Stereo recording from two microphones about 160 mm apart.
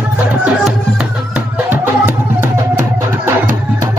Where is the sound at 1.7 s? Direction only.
15° right (ahead or behind).